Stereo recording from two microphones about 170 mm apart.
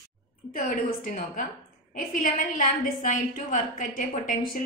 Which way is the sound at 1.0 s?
55° left (ahead or behind).